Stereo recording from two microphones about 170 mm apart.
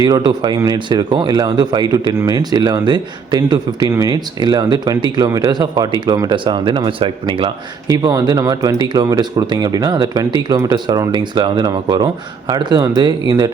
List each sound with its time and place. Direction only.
0.0 s a man's voice: 25° right (ahead or behind)